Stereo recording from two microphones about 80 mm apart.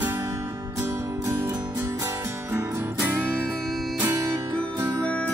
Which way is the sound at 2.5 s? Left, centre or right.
Right.